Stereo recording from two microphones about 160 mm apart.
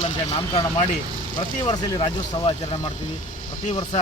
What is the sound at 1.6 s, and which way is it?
Speech, 30° left (ahead or behind).